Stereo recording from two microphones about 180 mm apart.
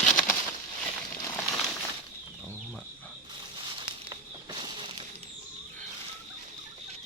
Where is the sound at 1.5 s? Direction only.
Centre (ahead or behind).